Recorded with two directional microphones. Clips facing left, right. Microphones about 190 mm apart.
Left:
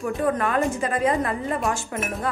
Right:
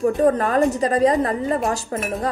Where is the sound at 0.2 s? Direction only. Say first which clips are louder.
Right 3 dB; 40° right (ahead or behind).